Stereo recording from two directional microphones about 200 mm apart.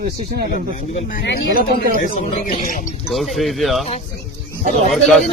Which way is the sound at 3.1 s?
Centre (ahead or behind).